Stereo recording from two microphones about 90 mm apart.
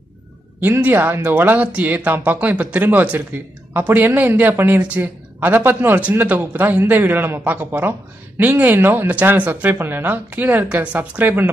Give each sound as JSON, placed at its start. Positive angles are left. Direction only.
{"t": 0.6, "sound": "speech", "side_deg": -20}